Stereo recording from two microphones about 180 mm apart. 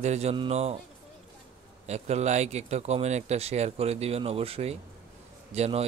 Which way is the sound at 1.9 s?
40° right (ahead or behind).